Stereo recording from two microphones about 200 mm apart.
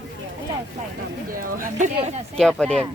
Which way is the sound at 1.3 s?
45° right (ahead or behind).